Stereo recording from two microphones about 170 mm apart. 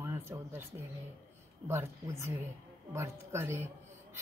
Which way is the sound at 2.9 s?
15° right (ahead or behind).